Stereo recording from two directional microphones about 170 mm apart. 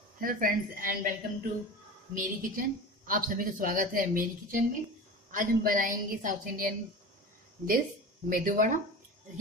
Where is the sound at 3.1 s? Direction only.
55° right (ahead or behind).